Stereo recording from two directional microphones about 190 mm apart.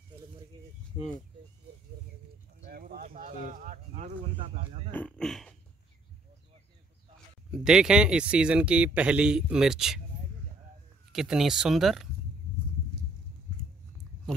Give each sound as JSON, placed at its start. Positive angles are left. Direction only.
{"t": 2.7, "sound": "speech", "side_deg": -50}
{"t": 4.9, "sound": "burping", "side_deg": 5}
{"t": 7.5, "sound": "a man's voice", "side_deg": -5}
{"t": 11.1, "sound": "a man's voice", "side_deg": 0}